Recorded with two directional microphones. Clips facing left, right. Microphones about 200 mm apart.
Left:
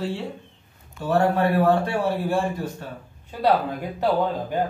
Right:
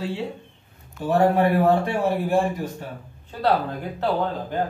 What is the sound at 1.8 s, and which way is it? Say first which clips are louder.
Speech: right 1 dB; 20° right (ahead or behind).